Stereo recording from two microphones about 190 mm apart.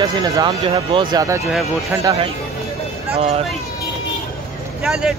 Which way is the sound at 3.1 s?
30° right (ahead or behind).